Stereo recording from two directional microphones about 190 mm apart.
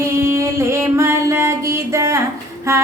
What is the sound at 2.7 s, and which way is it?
Child singing, 15° right (ahead or behind).